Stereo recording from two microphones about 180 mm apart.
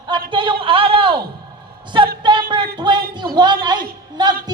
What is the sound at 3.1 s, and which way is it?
A man's voice, 25° right (ahead or behind).